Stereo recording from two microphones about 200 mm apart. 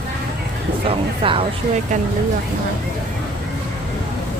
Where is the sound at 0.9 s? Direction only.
25° right (ahead or behind).